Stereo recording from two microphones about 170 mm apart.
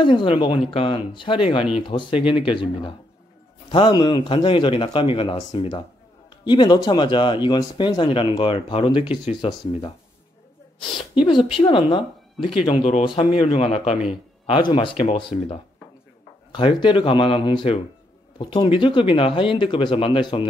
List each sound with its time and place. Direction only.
0.0 s speech: 30° left (ahead or behind)
11.6 s speech: 30° left (ahead or behind)